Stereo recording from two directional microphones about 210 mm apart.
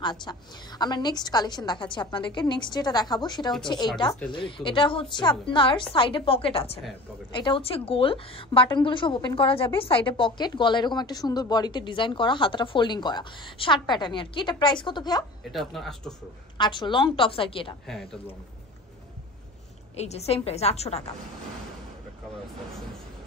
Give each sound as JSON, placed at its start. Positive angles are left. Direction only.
{"t": 0.0, "sound": "speech", "side_deg": 20}
{"t": 15.5, "sound": "a man's voice", "side_deg": 0}
{"t": 16.5, "sound": "speech", "side_deg": 20}
{"t": 17.8, "sound": "a man's voice", "side_deg": 0}
{"t": 20.0, "sound": "speech", "side_deg": 30}